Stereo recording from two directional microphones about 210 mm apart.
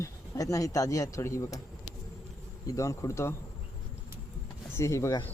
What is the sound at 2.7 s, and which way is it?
Speech, 15° left (ahead or behind).